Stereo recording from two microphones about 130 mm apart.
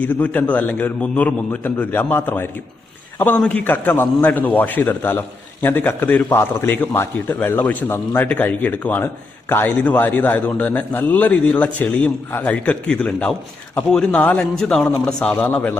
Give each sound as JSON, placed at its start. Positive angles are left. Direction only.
{"t": 0.0, "sound": "a man's voice", "side_deg": 10}